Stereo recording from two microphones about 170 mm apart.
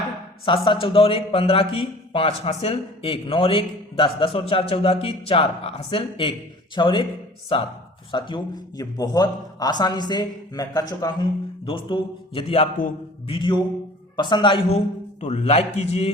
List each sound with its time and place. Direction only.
0.4 s a man's voice: 30° left (ahead or behind)
15.2 s a man's voice: 40° left (ahead or behind)